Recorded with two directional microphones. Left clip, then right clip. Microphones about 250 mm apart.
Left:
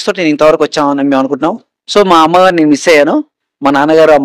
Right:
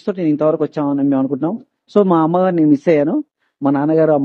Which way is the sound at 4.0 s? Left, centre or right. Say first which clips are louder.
Left 8 dB; left.